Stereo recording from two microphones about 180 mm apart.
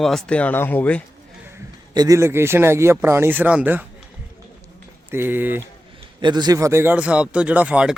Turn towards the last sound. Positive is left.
turn(degrees=-5)  # may be behind; listen again after turning